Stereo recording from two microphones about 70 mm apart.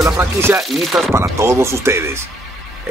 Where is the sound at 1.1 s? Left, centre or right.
Right.